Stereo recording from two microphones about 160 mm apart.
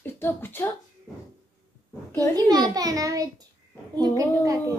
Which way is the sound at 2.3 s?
25° right (ahead or behind).